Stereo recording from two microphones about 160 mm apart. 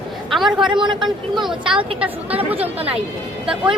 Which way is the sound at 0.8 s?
30° right (ahead or behind).